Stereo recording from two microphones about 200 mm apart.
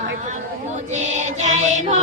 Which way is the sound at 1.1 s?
35° right (ahead or behind).